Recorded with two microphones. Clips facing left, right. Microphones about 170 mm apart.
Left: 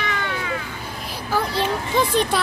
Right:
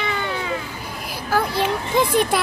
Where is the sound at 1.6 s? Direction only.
10° right (ahead or behind).